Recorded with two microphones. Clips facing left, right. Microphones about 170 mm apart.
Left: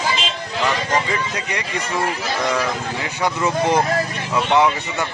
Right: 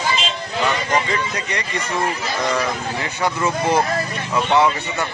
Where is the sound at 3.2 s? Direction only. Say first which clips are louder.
Left 1 dB; 15° left (ahead or behind).